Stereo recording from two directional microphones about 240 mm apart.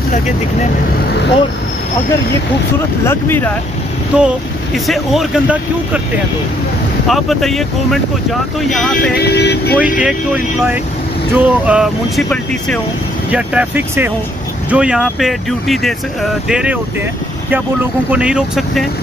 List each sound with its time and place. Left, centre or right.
3.1 s speech: centre
4.1 s speech: centre
7.1 s speech: centre
9.1 s vehicle: left
9.8 s speech: centre
18.1 s speech: centre